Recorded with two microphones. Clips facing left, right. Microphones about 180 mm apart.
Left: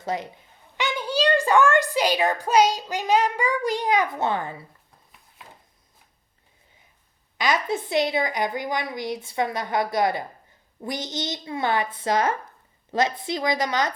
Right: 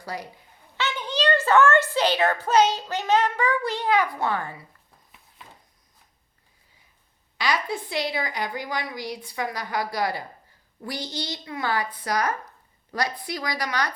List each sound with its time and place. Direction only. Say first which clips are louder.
0.0 s a child's voice: left 6 dB; 20° left (ahead or behind)
7.3 s a woman's voice: left 3 dB; 20° left (ahead or behind)